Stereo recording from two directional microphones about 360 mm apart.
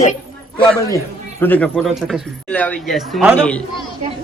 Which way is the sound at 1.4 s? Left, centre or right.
Centre.